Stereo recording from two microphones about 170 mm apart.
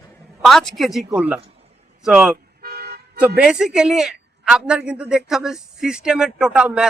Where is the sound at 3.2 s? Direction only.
5° right (ahead or behind).